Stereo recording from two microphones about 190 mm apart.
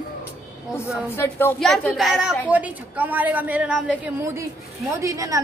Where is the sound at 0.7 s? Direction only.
15° left (ahead or behind).